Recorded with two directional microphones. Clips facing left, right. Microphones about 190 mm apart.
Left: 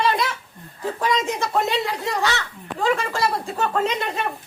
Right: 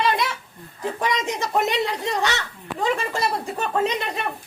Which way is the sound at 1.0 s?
15° right (ahead or behind).